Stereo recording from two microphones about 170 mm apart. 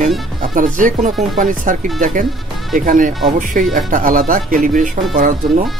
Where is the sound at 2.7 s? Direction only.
50° right (ahead or behind).